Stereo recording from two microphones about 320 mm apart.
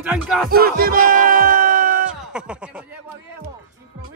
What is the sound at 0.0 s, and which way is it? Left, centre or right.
Speech, centre.